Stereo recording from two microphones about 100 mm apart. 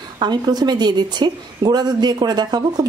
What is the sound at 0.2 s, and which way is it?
A woman's voice, 45° right (ahead or behind).